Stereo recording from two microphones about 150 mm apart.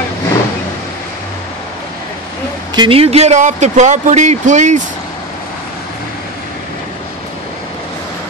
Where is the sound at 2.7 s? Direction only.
30° right (ahead or behind).